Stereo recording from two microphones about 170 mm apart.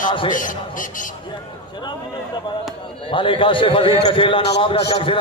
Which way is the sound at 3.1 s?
30° left (ahead or behind).